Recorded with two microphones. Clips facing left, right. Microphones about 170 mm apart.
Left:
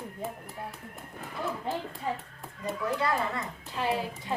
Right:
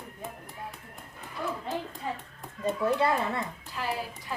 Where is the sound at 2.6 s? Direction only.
20° right (ahead or behind).